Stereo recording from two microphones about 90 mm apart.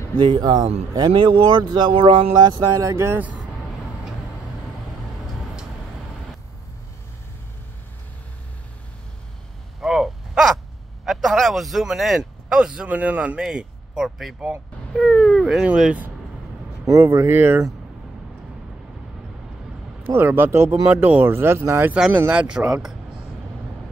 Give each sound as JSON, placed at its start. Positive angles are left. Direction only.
{"t": 0.2, "sound": "speech", "side_deg": -55}
{"t": 2.6, "sound": "speech", "side_deg": -40}
{"t": 3.1, "sound": "speech", "side_deg": -20}
{"t": 9.8, "sound": "a sound", "side_deg": 0}
{"t": 11.1, "sound": "speech", "side_deg": 0}
{"t": 16.8, "sound": "speech", "side_deg": -30}
{"t": 20.0, "sound": "speech", "side_deg": -25}